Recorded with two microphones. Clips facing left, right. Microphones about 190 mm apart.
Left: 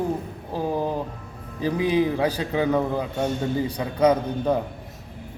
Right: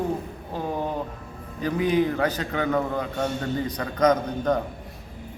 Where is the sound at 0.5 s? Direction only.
10° left (ahead or behind).